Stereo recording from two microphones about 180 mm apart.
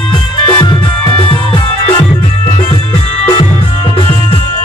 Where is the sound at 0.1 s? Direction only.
25° left (ahead or behind).